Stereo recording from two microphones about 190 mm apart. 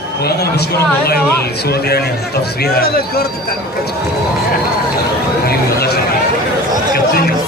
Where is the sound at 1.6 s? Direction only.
55° left (ahead or behind).